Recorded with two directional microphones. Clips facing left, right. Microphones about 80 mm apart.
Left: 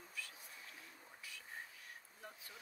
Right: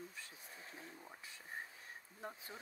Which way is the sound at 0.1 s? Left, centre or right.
Right.